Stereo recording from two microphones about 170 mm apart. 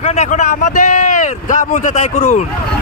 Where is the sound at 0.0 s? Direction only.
45° left (ahead or behind).